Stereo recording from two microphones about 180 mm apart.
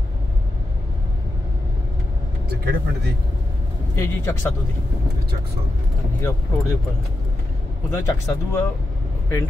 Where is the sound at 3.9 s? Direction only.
15° left (ahead or behind).